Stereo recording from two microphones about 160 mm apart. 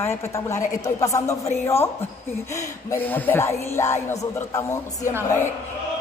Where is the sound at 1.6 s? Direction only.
15° left (ahead or behind).